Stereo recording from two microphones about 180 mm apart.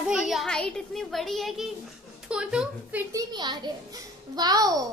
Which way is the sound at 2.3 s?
5° right (ahead or behind).